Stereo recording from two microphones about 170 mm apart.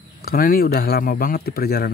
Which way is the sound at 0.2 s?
60° left (ahead or behind).